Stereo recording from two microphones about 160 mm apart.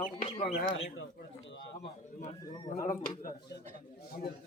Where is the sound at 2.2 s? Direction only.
45° left (ahead or behind).